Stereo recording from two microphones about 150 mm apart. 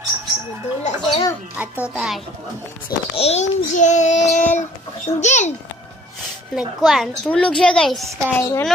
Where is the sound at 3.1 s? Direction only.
45° left (ahead or behind).